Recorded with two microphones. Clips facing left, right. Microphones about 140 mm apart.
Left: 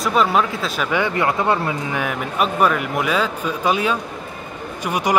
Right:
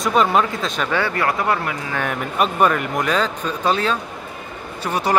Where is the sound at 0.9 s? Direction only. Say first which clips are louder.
Left 2 dB; 20° left (ahead or behind).